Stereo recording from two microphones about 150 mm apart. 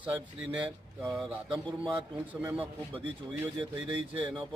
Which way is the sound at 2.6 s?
35° right (ahead or behind).